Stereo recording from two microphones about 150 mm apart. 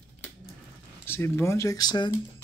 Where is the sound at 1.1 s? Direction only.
15° left (ahead or behind).